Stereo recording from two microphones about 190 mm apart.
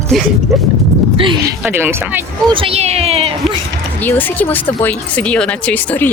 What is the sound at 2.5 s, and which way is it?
Speech, 30° right (ahead or behind).